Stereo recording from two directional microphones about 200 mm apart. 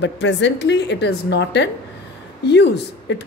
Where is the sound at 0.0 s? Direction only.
65° left (ahead or behind).